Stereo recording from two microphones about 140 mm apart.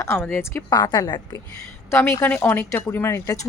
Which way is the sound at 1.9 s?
20° left (ahead or behind).